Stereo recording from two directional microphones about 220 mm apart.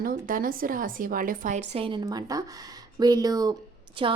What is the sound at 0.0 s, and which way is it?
Speech, 40° right (ahead or behind).